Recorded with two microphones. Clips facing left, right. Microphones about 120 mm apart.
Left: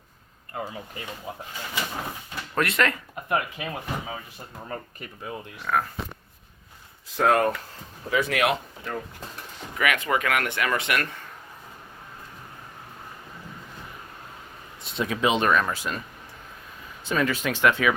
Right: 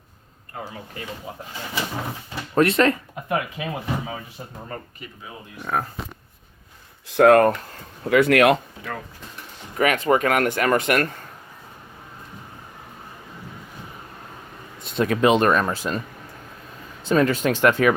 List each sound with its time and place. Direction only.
2.6 s speech: 30° right (ahead or behind)
3.3 s speech: 5° right (ahead or behind)
5.7 s speech: 25° right (ahead or behind)
7.1 s speech: 60° right (ahead or behind); by 9.0 s 75° right (ahead or behind)
9.7 s speech: 35° right (ahead or behind)
14.9 s speech: 50° right (ahead or behind); by 16.0 s 35° right (ahead or behind)
17.0 s speech: 35° right (ahead or behind)